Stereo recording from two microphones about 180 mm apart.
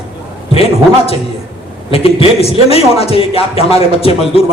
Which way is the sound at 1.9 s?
30° left (ahead or behind).